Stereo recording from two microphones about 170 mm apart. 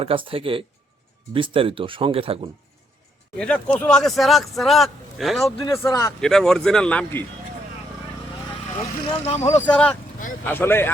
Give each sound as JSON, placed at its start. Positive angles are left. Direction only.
{"t": 0.0, "sound": "speech", "side_deg": -30}
{"t": 3.3, "sound": "speech", "side_deg": 5}
{"t": 5.6, "sound": "speech", "side_deg": 20}
{"t": 6.1, "sound": "speech", "side_deg": 5}
{"t": 9.2, "sound": "speech", "side_deg": 35}
{"t": 9.6, "sound": "speech", "side_deg": 5}